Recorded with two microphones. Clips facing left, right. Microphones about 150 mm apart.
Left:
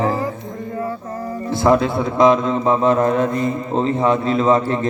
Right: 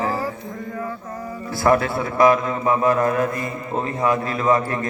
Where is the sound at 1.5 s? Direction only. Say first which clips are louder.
Left 3 dB; 20° left (ahead or behind).